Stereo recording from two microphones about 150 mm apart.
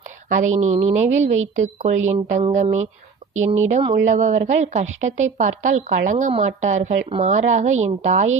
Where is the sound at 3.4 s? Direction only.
50° right (ahead or behind).